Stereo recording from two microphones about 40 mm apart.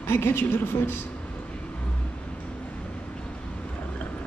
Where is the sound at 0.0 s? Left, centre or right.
Left.